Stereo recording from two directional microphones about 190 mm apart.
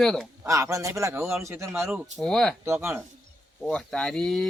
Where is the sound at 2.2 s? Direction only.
5° left (ahead or behind).